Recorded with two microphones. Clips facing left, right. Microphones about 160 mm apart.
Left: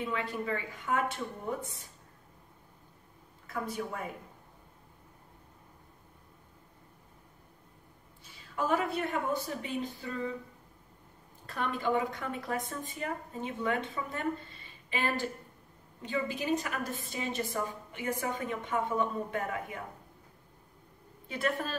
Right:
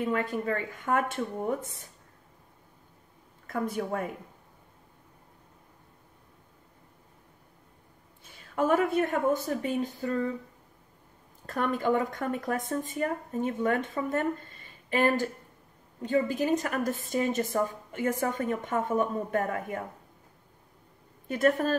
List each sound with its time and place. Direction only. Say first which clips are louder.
0.0 s a woman's voice: right 5 dB; 45° right (ahead or behind)
3.4 s a woman's voice: right 5 dB; 50° right (ahead or behind)
8.3 s a woman's voice: right 5 dB; 50° right (ahead or behind)
11.4 s a woman's voice: right 5 dB; 45° right (ahead or behind)
21.3 s a woman's voice: right 8 dB; 45° right (ahead or behind)